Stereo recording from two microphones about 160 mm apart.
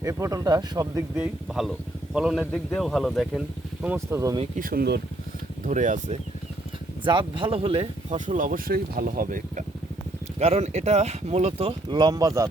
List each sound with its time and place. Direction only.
0.0 s speech: 20° right (ahead or behind)
1.1 s speech: 5° right (ahead or behind)
3.8 s speech: 15° right (ahead or behind)
4.5 s speech: 65° right (ahead or behind)
5.6 s speech: 50° right (ahead or behind)
7.0 s speech: 30° right (ahead or behind)
8.3 s speech: 55° right (ahead or behind)
10.3 s speech: 40° right (ahead or behind); by 12.5 s 20° right (ahead or behind)